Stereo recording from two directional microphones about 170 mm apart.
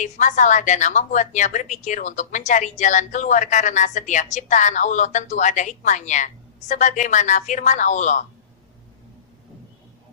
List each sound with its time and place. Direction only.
0.0 s a woman's voice: 45° left (ahead or behind)